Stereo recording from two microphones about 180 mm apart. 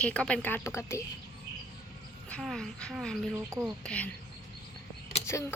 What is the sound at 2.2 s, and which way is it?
Speech, 5° left (ahead or behind).